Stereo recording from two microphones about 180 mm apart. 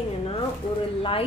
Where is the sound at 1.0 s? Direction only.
30° left (ahead or behind).